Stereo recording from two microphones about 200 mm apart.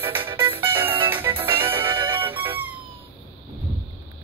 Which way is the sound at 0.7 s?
10° right (ahead or behind).